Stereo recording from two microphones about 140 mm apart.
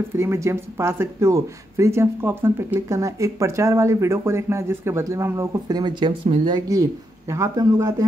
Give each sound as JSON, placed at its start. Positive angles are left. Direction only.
{"t": 0.1, "sound": "speech", "side_deg": -20}